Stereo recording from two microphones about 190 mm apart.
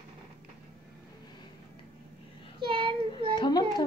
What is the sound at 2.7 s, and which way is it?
Child singing, 25° right (ahead or behind).